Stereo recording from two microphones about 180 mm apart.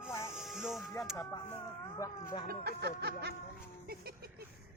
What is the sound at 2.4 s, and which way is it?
Music, 60° right (ahead or behind).